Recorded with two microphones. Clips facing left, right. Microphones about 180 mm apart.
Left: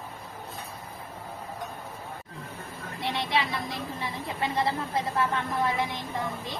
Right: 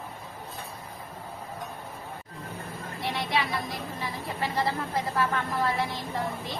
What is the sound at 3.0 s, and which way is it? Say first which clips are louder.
Speech: left 1 dB; 25° left (ahead or behind).